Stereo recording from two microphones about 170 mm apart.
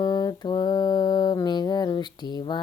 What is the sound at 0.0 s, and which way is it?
Mantra, 20° left (ahead or behind).